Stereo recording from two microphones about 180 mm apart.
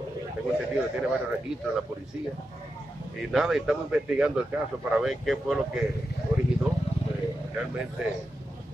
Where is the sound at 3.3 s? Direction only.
Centre (ahead or behind).